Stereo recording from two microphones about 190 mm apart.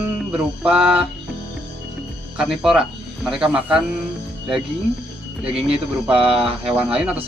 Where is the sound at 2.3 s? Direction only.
5° right (ahead or behind).